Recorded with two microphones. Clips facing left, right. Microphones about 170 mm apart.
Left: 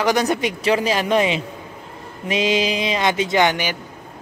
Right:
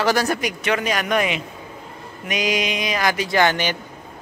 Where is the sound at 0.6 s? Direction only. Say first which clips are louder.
Left 5 dB; 30° left (ahead or behind); by 3.8 s 15° left (ahead or behind).